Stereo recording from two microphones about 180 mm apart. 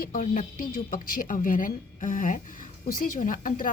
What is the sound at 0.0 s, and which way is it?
A woman's voice, 50° left (ahead or behind).